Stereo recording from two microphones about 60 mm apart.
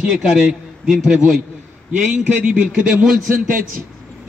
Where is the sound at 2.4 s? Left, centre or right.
Right.